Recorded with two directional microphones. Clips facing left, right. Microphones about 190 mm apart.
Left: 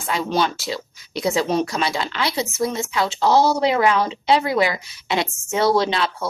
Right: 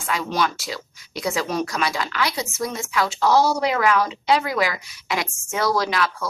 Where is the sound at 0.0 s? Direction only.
30° left (ahead or behind).